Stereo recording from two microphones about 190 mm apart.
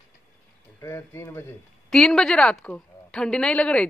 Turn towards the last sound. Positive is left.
turn(degrees=5)  # may be behind; listen again after turning